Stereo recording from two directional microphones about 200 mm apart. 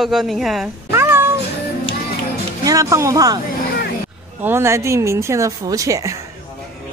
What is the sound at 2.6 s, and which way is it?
Speech, 15° right (ahead or behind).